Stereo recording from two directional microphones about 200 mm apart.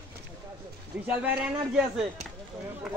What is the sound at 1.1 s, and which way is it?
Speech, 10° right (ahead or behind).